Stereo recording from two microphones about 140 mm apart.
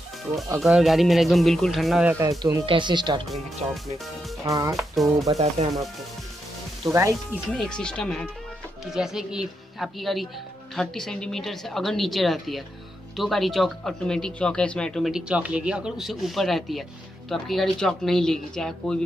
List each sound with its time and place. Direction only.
0.6 s speech: 5° right (ahead or behind)
2.1 s speech: 20° right (ahead or behind)
2.6 s speech: 35° right (ahead or behind)
3.3 s speech: centre (ahead or behind)
4.5 s speech: 25° right (ahead or behind)
4.7 s speech: centre (ahead or behind)
6.9 s speech: 20° right (ahead or behind)
7.5 s speech: 5° left (ahead or behind)